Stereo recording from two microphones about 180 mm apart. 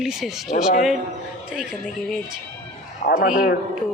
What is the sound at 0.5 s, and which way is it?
Speech, 35° left (ahead or behind).